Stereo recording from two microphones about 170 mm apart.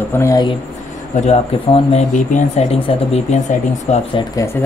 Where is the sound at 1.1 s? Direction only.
40° left (ahead or behind).